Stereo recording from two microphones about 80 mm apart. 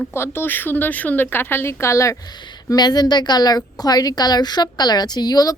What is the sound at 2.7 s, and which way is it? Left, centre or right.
A woman's voice, left.